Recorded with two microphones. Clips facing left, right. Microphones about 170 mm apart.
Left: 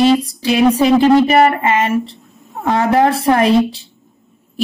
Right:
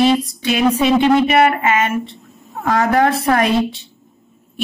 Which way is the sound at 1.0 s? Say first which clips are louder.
Left 3 dB; 35° left (ahead or behind).